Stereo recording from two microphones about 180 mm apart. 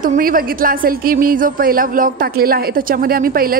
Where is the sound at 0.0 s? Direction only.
50° right (ahead or behind).